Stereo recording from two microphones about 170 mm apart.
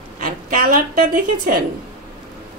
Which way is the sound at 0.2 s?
55° right (ahead or behind).